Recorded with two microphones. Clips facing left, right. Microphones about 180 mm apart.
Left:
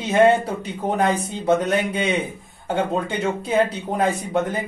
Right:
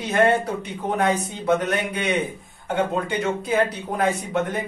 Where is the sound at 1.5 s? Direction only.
25° left (ahead or behind).